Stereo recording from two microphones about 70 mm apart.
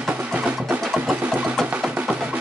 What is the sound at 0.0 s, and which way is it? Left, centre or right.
Music, centre.